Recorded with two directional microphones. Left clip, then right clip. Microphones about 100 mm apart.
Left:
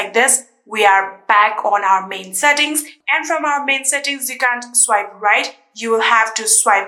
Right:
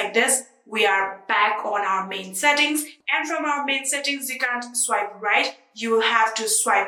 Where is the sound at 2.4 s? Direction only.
35° left (ahead or behind).